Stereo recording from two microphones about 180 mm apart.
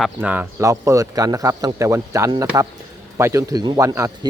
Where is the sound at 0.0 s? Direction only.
10° right (ahead or behind).